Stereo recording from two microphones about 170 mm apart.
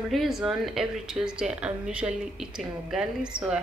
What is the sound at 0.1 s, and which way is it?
Speech, centre (ahead or behind).